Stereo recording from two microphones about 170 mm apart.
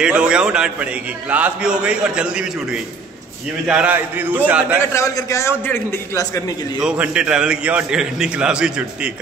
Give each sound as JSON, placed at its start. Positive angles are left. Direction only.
{"t": 0.0, "sound": "a man's voice", "side_deg": -5}
{"t": 4.9, "sound": "a man's voice", "side_deg": 20}
{"t": 6.8, "sound": "a man's voice", "side_deg": -5}